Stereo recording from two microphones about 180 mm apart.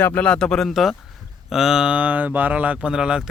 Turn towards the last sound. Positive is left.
turn(degrees=-5)  # may be behind; listen again after turning